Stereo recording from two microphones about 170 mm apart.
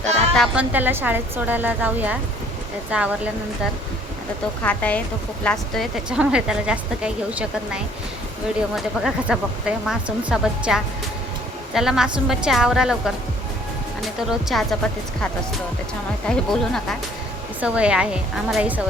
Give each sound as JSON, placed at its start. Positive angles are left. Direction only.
{"t": 0.3, "sound": "a woman's voice", "side_deg": -5}
{"t": 4.6, "sound": "a woman's voice", "side_deg": 10}
{"t": 14.2, "sound": "a woman's voice", "side_deg": 0}
{"t": 16.2, "sound": "a woman's voice", "side_deg": 5}